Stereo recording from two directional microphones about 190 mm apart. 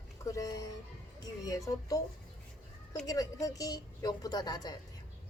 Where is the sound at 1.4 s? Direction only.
20° left (ahead or behind).